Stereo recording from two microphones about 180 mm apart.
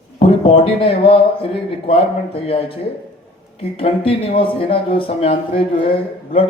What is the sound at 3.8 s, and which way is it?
Speech, 30° left (ahead or behind).